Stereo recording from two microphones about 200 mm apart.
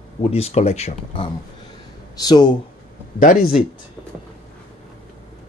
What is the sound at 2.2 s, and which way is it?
Speech, 20° left (ahead or behind).